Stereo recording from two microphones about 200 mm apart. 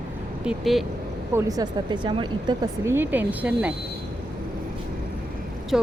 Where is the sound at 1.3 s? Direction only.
15° right (ahead or behind).